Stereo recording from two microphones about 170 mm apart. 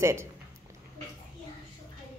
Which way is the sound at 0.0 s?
15° right (ahead or behind).